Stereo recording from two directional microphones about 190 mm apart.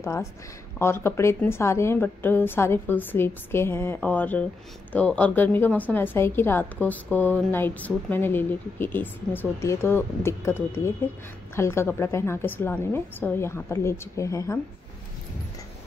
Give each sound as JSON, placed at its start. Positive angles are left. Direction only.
{"t": 0.0, "sound": "a woman's voice", "side_deg": 15}